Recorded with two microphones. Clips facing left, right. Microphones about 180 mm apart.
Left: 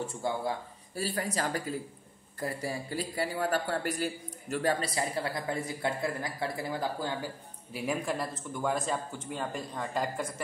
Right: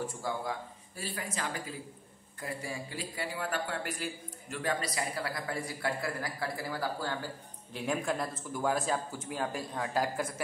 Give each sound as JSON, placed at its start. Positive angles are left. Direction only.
{"t": 0.0, "sound": "speech", "side_deg": 25}
{"t": 0.9, "sound": "a man's voice", "side_deg": 40}
{"t": 4.8, "sound": "speech", "side_deg": 25}
{"t": 7.7, "sound": "speech", "side_deg": 5}